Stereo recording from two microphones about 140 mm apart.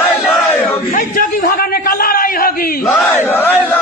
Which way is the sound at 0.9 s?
70° left (ahead or behind).